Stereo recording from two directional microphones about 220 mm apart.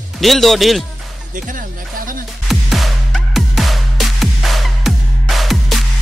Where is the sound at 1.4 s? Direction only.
40° right (ahead or behind).